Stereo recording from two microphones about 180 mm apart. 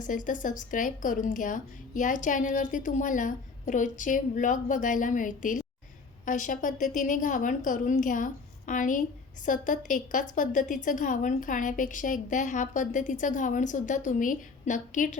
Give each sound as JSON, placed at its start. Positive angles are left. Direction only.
{"t": 0.0, "sound": "a woman's voice", "side_deg": 45}